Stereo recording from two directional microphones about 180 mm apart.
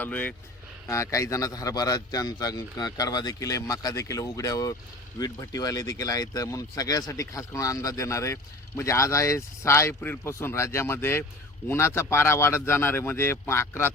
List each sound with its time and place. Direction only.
0.0 s a man's voice: 10° left (ahead or behind)